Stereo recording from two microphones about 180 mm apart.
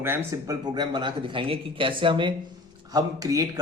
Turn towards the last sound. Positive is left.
turn(degrees=-20)  # may be behind; listen again after turning